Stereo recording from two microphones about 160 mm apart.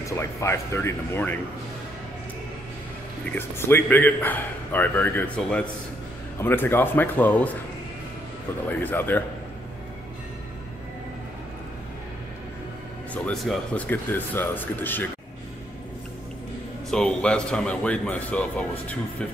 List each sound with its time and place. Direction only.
0.0 s a man's voice: 20° left (ahead or behind)
3.3 s a man's voice: 15° left (ahead or behind)
8.6 s a man's voice: 10° left (ahead or behind)
13.1 s a man's voice: 5° left (ahead or behind)
16.9 s a man's voice: 5° left (ahead or behind)